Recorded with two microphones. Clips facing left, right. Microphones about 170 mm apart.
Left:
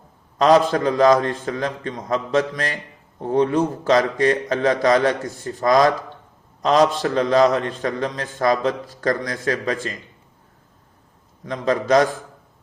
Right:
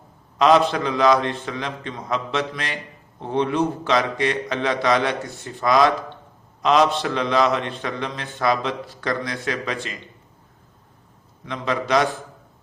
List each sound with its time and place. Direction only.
0.3 s a man's voice: 45° left (ahead or behind)
11.4 s a man's voice: 45° left (ahead or behind)